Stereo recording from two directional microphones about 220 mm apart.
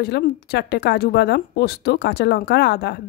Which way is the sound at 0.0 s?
50° left (ahead or behind).